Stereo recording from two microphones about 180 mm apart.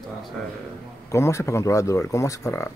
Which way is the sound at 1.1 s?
15° left (ahead or behind).